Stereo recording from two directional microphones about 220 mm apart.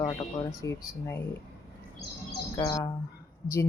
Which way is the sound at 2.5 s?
20° left (ahead or behind).